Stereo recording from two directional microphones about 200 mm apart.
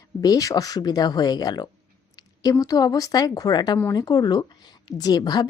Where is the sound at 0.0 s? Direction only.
15° left (ahead or behind).